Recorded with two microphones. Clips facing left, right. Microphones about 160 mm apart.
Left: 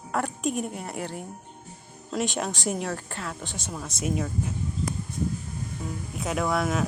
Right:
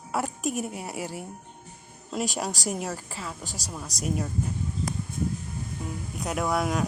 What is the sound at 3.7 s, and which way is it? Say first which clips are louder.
Speech: left 1 dB; centre (ahead or behind).